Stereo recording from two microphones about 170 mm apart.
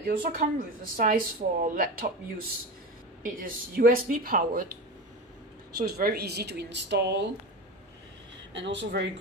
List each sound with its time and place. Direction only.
0.0 s speech: 55° right (ahead or behind)
3.3 s speech: 55° right (ahead or behind)
5.8 s speech: 65° right (ahead or behind); by 7.2 s 90° right
8.5 s speech: 90° right